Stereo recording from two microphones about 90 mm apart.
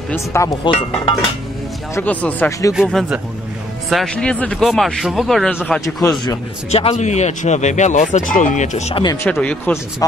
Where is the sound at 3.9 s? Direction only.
10° left (ahead or behind).